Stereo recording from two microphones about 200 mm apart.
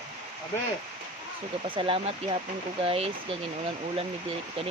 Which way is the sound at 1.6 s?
25° right (ahead or behind).